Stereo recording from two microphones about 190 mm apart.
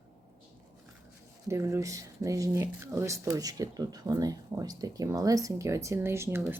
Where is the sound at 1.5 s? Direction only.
15° right (ahead or behind).